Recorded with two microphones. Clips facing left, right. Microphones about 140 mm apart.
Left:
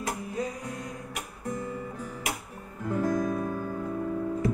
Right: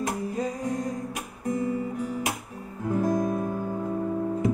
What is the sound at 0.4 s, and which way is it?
Music, 40° right (ahead or behind).